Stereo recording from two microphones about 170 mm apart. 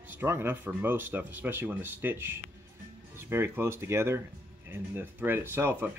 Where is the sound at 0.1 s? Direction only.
15° right (ahead or behind).